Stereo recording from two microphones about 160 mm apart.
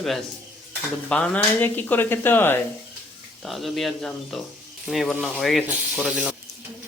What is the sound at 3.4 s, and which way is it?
A man's voice, centre (ahead or behind).